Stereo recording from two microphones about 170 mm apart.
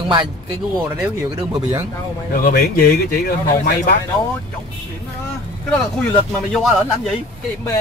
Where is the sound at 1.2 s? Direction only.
15° right (ahead or behind).